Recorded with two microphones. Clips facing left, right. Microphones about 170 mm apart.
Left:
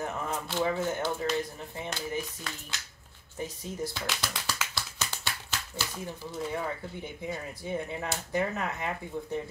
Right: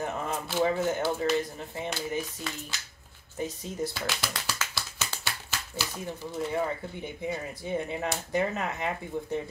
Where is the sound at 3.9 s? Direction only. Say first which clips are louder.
Right 2 dB; 5° right (ahead or behind).